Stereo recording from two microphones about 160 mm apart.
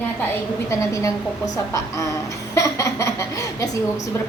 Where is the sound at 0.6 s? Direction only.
20° left (ahead or behind).